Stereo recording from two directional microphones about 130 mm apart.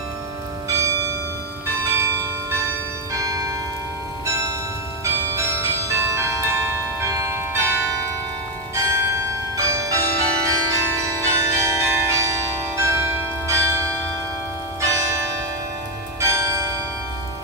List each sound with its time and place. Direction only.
0.7 s church bell: 25° right (ahead or behind)
1.8 s bell: 15° right (ahead or behind)
2.5 s change ringing: 25° right (ahead or behind)
4.3 s music: 20° right (ahead or behind)
5.0 s change ringing: 20° right (ahead or behind)
8.7 s bell: 25° right (ahead or behind)
14.8 s church bell: 25° right (ahead or behind)
16.2 s bell: 20° right (ahead or behind)